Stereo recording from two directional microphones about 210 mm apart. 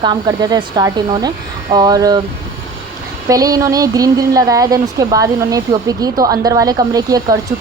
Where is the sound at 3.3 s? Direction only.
15° right (ahead or behind).